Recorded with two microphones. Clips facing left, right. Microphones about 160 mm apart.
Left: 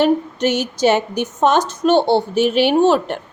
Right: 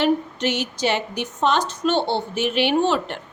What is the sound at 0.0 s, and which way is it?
A woman's voice, 45° left (ahead or behind).